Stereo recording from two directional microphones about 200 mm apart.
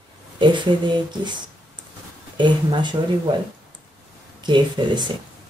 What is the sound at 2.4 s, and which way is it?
Speech, 20° right (ahead or behind).